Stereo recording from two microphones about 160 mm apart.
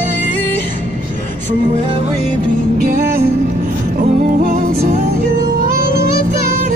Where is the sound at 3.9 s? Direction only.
60° right (ahead or behind).